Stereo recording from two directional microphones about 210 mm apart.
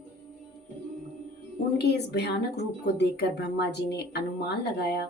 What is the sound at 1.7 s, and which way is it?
Speech, 50° left (ahead or behind).